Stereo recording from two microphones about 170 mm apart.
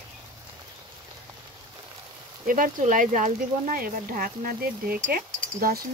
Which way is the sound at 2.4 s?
50° right (ahead or behind).